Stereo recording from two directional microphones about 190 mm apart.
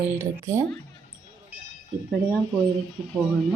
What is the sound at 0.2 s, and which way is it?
Speech, 15° right (ahead or behind).